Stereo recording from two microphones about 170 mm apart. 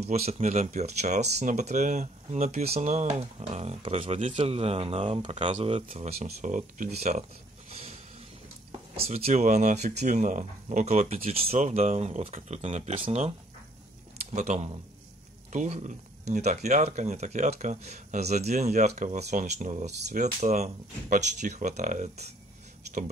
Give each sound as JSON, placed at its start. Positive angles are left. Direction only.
{"t": 0.2, "sound": "speech", "side_deg": -40}
{"t": 9.0, "sound": "speech", "side_deg": -35}
{"t": 14.3, "sound": "speech", "side_deg": -45}